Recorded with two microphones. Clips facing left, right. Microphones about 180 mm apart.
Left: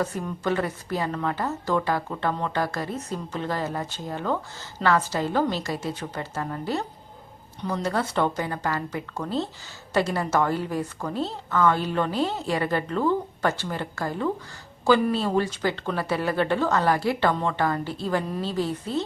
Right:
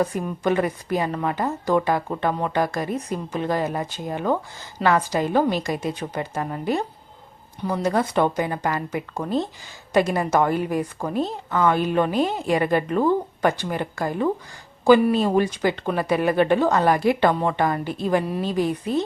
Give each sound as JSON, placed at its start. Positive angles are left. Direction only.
{"t": 0.0, "sound": "a woman's voice", "side_deg": -15}